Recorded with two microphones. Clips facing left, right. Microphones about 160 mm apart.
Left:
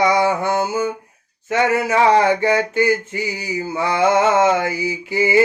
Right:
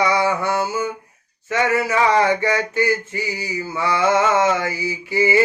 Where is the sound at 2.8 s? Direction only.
15° left (ahead or behind).